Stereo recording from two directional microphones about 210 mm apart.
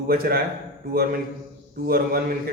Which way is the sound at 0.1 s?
45° right (ahead or behind).